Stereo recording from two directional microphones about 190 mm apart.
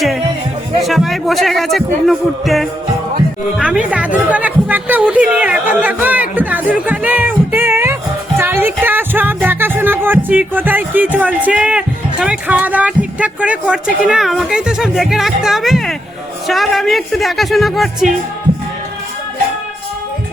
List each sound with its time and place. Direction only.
0.8 s speech: centre (ahead or behind)
8.4 s music: 10° right (ahead or behind)
16.5 s speech: centre (ahead or behind)